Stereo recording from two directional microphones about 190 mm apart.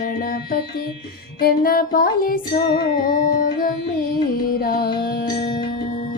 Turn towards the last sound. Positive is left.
turn(degrees=55)  # may be behind; listen again after turning